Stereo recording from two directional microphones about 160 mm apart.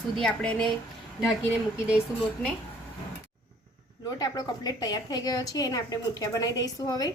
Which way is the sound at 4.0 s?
25° left (ahead or behind).